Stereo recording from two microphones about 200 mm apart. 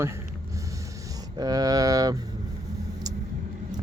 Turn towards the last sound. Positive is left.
turn(degrees=-20)  # may be behind; listen again after turning